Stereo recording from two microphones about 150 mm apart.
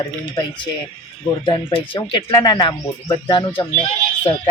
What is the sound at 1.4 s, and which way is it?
Speech, 30° left (ahead or behind).